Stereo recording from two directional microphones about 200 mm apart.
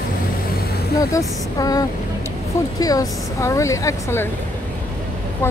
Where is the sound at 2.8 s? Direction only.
20° left (ahead or behind).